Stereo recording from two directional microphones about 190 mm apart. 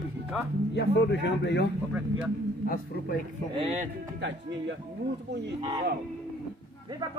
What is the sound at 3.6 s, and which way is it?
Speech, 35° right (ahead or behind).